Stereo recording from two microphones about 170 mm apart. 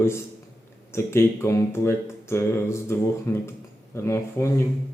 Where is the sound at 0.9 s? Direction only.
15° left (ahead or behind).